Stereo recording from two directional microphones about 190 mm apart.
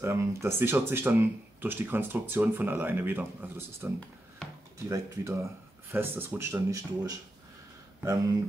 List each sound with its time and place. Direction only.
0.0 s speech: 15° right (ahead or behind)